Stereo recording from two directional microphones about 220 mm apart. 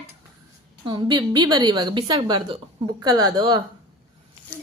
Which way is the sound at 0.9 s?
20° right (ahead or behind).